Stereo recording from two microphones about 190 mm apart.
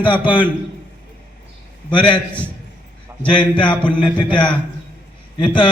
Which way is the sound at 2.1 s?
5° left (ahead or behind).